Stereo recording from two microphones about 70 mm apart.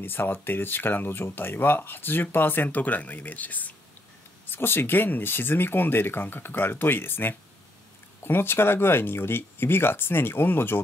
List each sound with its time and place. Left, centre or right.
0.0 s speech: left
4.5 s speech: left